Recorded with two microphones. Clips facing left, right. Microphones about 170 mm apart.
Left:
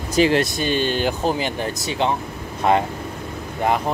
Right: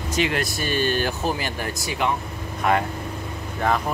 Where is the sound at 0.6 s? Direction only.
20° left (ahead or behind).